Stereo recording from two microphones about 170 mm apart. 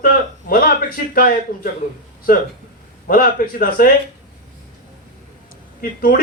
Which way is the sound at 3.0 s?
55° left (ahead or behind).